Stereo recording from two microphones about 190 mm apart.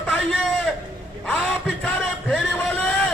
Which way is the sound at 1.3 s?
5° left (ahead or behind).